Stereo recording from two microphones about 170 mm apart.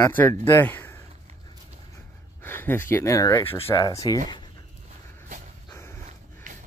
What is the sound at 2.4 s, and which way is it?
Speech, 10° left (ahead or behind).